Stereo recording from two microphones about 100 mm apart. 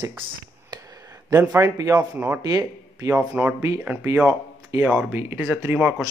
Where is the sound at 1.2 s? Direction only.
35° right (ahead or behind).